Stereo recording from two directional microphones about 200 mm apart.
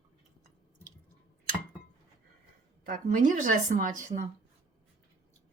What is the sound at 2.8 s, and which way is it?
Speech, 40° right (ahead or behind).